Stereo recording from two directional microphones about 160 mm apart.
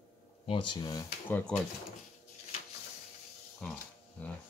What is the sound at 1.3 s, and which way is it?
Speech, 10° left (ahead or behind).